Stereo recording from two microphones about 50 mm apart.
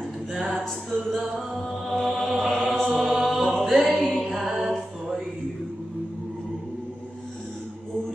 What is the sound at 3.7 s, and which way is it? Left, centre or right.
Music, centre.